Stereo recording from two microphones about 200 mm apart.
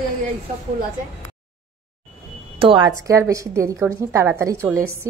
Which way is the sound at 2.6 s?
25° right (ahead or behind).